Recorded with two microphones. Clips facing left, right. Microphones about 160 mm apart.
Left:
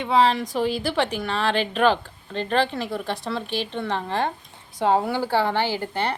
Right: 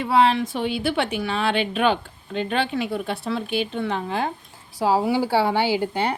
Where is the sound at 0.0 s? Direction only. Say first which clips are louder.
Right 1 dB; 5° right (ahead or behind).